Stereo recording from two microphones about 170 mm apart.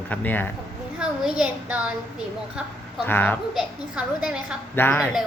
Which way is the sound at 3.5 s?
5° right (ahead or behind).